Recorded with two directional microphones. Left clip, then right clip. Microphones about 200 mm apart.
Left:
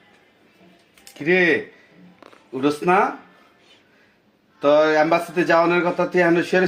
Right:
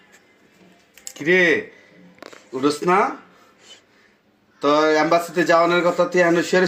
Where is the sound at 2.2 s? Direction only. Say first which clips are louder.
Right 7 dB; 20° right (ahead or behind).